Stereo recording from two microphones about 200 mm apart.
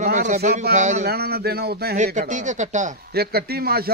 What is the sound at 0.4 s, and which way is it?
Speech, 45° right (ahead or behind).